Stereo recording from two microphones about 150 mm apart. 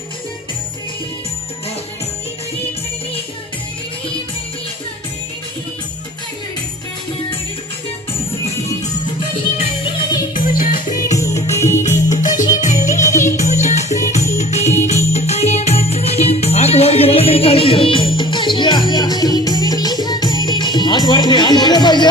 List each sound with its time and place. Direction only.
9.8 s music: 25° left (ahead or behind)
10.3 s music: 65° left (ahead or behind)
11.1 s music: 20° left (ahead or behind)
12.1 s music: 60° left (ahead or behind); by 22.0 s 30° left (ahead or behind)